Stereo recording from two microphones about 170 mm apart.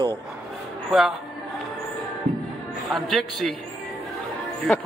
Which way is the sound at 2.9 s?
Centre (ahead or behind).